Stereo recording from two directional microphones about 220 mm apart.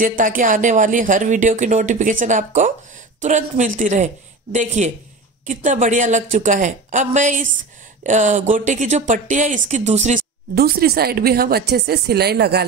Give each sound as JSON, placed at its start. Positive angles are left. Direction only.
{"t": 0.0, "sound": "speech", "side_deg": -35}